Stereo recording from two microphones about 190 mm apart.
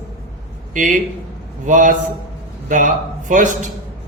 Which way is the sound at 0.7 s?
40° right (ahead or behind).